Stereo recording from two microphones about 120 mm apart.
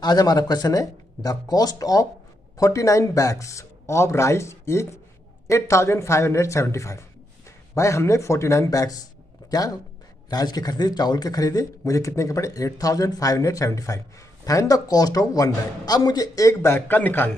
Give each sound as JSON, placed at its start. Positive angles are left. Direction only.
{"t": 0.0, "sound": "speech", "side_deg": 35}